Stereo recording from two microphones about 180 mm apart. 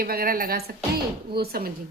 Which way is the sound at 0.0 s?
55° right (ahead or behind).